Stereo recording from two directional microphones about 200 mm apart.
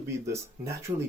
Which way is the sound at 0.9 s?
30° right (ahead or behind).